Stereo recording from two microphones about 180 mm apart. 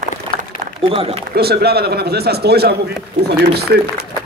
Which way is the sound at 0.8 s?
30° right (ahead or behind).